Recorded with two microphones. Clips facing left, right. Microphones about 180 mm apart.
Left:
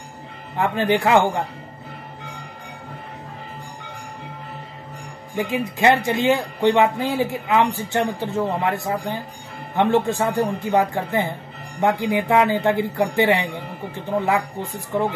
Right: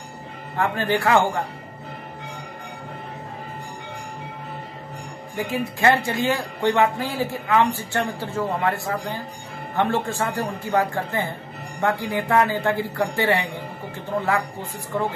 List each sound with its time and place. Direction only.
0.6 s speech: 20° left (ahead or behind)
5.4 s speech: 20° left (ahead or behind)